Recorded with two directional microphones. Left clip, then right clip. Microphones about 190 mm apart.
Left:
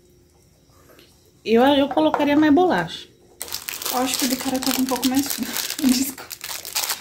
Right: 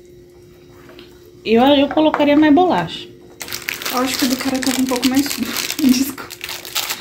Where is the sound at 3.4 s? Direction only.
50° left (ahead or behind).